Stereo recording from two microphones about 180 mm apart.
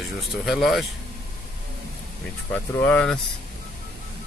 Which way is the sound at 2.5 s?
10° left (ahead or behind).